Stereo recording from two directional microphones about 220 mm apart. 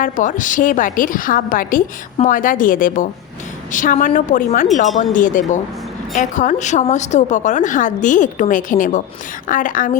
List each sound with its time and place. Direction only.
0.0 s a woman's voice: 35° left (ahead or behind)